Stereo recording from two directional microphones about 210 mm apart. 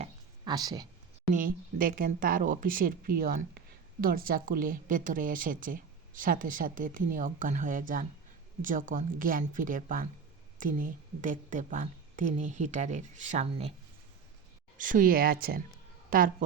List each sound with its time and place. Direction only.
0.0 s a sound: 20° right (ahead or behind)
1.3 s speech: 40° right (ahead or behind)
14.8 s speech: 40° right (ahead or behind)